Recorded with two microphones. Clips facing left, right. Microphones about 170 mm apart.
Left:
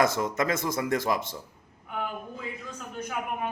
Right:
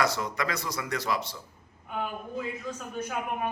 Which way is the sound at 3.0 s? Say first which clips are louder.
Even; 10° right (ahead or behind).